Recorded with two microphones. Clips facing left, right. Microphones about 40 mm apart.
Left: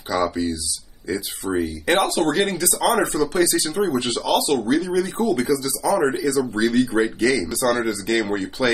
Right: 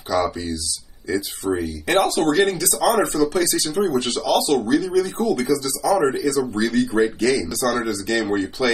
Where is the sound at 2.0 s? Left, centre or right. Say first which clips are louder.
Right 4 dB; left.